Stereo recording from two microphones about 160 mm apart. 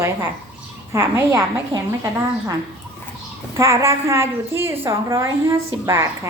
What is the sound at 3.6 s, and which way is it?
A woman's voice, 15° right (ahead or behind).